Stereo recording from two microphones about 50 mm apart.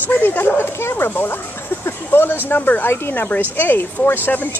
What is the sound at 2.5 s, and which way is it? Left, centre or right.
Speech, left.